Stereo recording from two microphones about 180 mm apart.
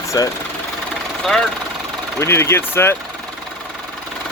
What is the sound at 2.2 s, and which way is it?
Speech, 15° left (ahead or behind).